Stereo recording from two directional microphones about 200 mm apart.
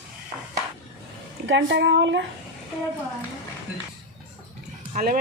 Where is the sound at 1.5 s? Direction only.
65° right (ahead or behind).